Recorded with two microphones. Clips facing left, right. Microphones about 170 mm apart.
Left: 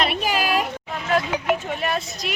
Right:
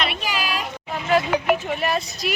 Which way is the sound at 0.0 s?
45° left (ahead or behind).